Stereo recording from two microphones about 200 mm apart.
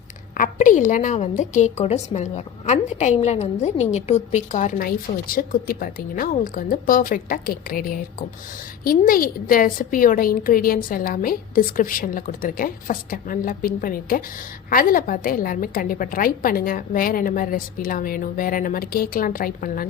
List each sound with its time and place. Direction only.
0.3 s a woman's voice: 40° left (ahead or behind)